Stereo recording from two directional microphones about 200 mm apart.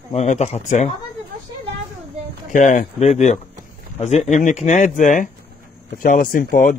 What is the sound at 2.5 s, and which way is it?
Speech, 40° left (ahead or behind).